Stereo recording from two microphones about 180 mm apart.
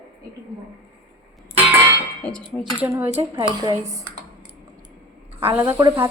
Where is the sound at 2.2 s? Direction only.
5° left (ahead or behind).